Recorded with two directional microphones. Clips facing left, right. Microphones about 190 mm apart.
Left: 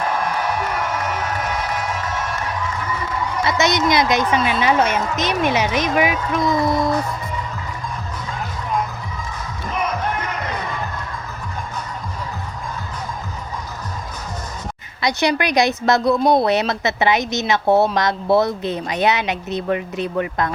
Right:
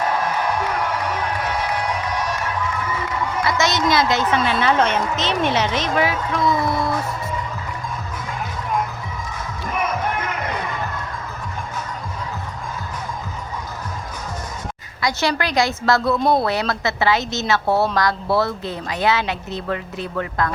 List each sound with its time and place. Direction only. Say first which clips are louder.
3.4 s a woman's voice: left 2 dB; 20° left (ahead or behind)
15.0 s a woman's voice: left 2 dB; 20° left (ahead or behind)